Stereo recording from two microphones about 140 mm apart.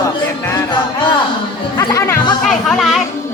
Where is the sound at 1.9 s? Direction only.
20° left (ahead or behind).